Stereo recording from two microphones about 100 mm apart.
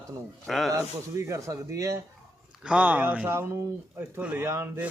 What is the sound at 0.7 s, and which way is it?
Speech, 30° right (ahead or behind).